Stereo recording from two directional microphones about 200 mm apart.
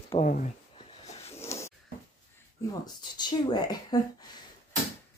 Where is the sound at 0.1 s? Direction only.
40° left (ahead or behind).